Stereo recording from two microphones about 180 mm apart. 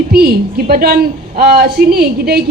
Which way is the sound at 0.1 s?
60° right (ahead or behind).